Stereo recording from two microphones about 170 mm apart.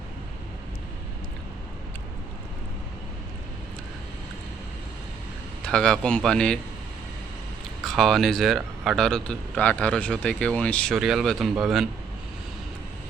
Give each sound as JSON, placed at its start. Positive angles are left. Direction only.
{"t": 5.6, "sound": "a man's voice", "side_deg": 5}
{"t": 7.9, "sound": "a man's voice", "side_deg": 0}